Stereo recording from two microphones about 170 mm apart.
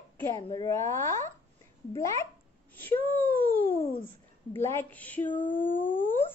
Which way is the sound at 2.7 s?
10° left (ahead or behind).